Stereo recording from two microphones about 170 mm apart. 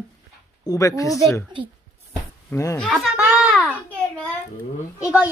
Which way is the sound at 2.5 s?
15° left (ahead or behind).